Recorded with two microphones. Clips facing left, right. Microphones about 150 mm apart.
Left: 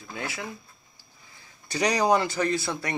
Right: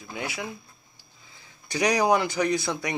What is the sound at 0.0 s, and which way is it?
Speech, 15° right (ahead or behind).